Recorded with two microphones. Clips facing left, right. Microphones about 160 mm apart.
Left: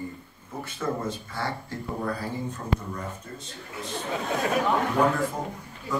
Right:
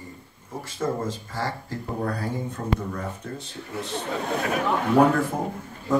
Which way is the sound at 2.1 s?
60° right (ahead or behind).